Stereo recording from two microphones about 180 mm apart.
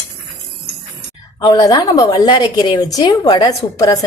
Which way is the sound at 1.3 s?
20° left (ahead or behind).